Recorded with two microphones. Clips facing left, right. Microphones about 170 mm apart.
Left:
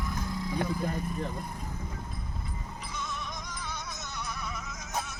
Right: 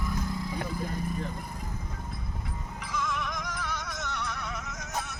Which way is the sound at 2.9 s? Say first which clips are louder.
Right 7 dB; 90° right.